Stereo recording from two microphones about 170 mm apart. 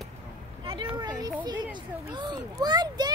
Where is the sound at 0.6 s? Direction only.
30° right (ahead or behind).